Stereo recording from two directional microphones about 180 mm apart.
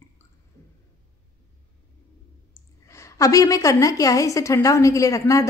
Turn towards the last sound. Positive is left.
turn(degrees=20)  # may be behind; listen again after turning